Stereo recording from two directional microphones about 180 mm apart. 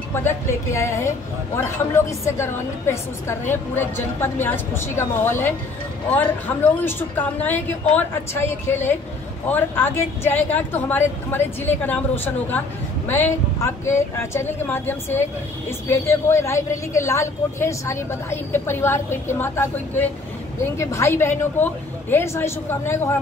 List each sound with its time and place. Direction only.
0.1 s a woman's voice: 15° left (ahead or behind)
6.8 s a woman's voice: 10° left (ahead or behind)